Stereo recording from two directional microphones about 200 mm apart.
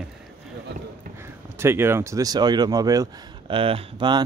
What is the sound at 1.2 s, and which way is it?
Speech, 10° right (ahead or behind).